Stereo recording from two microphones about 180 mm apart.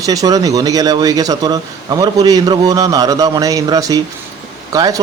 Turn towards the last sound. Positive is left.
turn(degrees=-20)  # may be behind; listen again after turning